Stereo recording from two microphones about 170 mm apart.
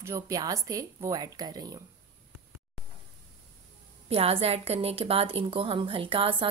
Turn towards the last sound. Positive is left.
turn(degrees=-30)  # may be behind; listen again after turning